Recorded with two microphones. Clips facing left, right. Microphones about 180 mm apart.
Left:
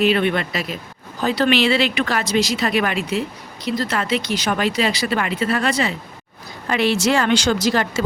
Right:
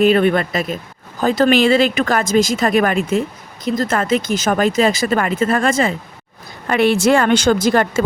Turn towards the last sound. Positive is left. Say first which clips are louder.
# right 4 dB
turn(degrees=-50)  # may be behind; listen again after turning